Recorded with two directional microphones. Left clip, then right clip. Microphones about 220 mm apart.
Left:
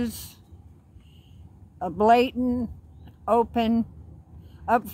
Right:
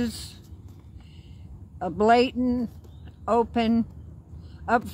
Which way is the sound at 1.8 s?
15° left (ahead or behind).